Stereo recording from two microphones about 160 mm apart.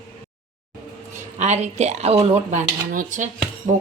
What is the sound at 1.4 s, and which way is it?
A woman's voice, 45° right (ahead or behind).